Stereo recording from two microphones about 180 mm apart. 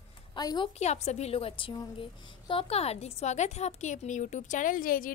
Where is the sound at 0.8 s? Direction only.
35° left (ahead or behind).